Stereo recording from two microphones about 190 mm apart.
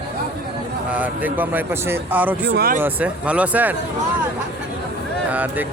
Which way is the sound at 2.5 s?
55° right (ahead or behind).